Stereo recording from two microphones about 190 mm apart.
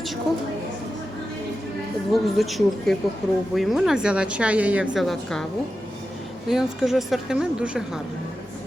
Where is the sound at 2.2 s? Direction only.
Centre (ahead or behind).